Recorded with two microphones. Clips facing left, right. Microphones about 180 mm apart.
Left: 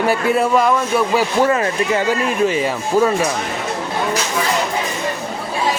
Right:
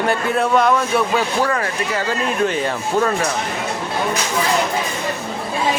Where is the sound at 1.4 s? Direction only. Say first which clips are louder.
Left 5 dB; 20° left (ahead or behind).